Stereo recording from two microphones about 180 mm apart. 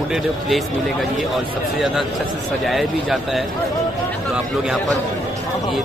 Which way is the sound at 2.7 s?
Centre (ahead or behind).